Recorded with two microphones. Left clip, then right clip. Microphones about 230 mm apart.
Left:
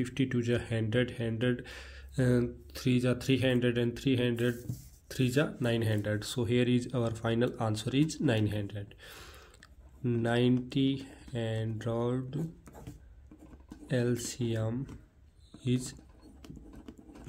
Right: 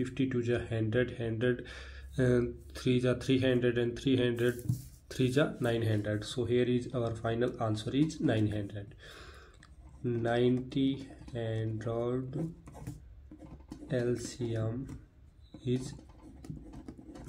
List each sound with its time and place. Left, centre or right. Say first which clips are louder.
0.0 s speech: even; left
13.8 s speech: left 1 dB; left